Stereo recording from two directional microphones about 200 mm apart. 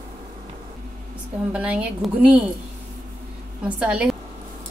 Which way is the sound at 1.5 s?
5° right (ahead or behind).